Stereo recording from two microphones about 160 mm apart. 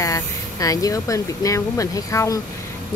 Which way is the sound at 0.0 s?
20° left (ahead or behind).